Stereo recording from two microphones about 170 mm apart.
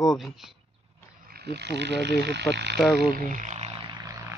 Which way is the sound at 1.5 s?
80° right.